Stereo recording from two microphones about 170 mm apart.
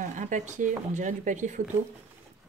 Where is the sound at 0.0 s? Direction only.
45° right (ahead or behind).